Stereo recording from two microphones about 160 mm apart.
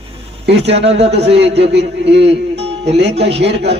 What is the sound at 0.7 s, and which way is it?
A man's voice, 40° right (ahead or behind).